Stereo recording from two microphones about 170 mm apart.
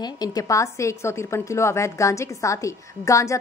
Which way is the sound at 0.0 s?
20° left (ahead or behind).